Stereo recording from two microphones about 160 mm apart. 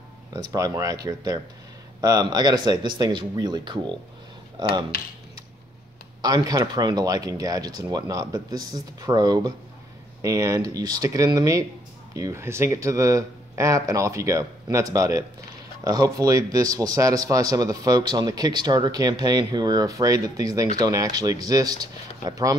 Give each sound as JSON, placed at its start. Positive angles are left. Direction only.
{"t": 0.3, "sound": "speech", "side_deg": -20}
{"t": 6.2, "sound": "speech", "side_deg": -25}